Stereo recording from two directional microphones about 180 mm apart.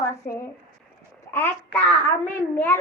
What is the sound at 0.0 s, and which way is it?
A woman's voice, 15° left (ahead or behind).